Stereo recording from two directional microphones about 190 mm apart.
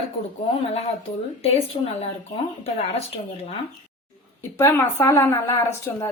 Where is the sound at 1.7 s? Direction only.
35° left (ahead or behind).